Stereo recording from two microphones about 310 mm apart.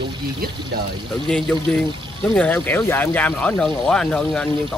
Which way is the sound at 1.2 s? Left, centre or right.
Centre.